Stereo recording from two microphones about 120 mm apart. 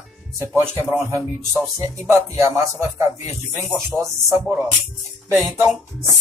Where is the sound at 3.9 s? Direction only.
25° right (ahead or behind).